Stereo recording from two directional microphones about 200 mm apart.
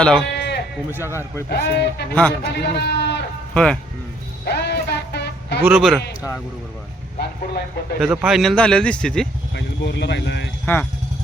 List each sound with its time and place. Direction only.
0.0 s speech: 5° left (ahead or behind)
0.3 s bleat: 55° left (ahead or behind)
1.0 s speech: 15° left (ahead or behind)
1.5 s speech: 55° left (ahead or behind)
3.5 s speech: 5° left (ahead or behind)
4.4 s music: 55° left (ahead or behind)
5.6 s speech: centre (ahead or behind)
7.2 s speech: 55° left (ahead or behind)
7.9 s speech: 5° right (ahead or behind)
9.6 s speech: 60° left (ahead or behind)